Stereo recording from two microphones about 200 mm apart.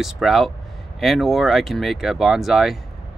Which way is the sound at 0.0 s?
Centre (ahead or behind).